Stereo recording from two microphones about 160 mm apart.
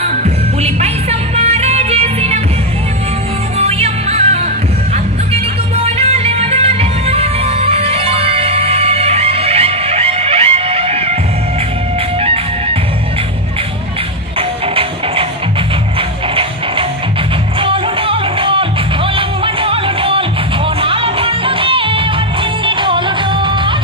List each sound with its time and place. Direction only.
0.0 s music: 40° right (ahead or behind)
3.5 s music: 40° right (ahead or behind)
5.9 s music: 40° right (ahead or behind)
12.2 s music: 35° right (ahead or behind)
17.6 s music: 35° right (ahead or behind)